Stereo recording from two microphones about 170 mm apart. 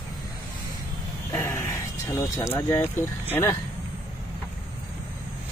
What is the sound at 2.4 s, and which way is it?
Speech, 15° left (ahead or behind).